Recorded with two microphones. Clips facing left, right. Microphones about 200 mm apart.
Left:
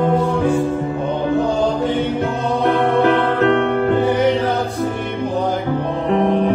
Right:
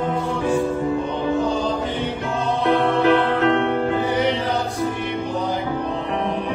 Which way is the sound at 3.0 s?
55° left (ahead or behind).